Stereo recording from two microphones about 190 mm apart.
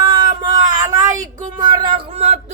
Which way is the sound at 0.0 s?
20° right (ahead or behind).